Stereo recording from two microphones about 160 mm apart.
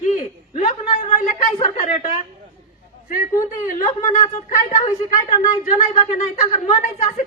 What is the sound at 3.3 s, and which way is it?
Speech, 20° left (ahead or behind).